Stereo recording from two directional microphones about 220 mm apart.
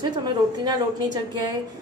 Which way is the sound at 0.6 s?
20° right (ahead or behind).